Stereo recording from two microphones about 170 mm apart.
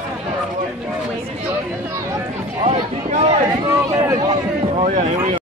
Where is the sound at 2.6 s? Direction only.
35° right (ahead or behind).